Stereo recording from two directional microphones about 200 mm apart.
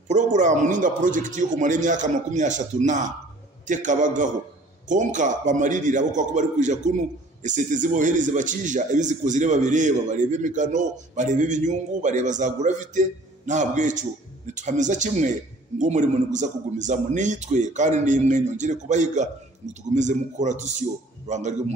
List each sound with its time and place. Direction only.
0.1 s a man's voice: 35° right (ahead or behind)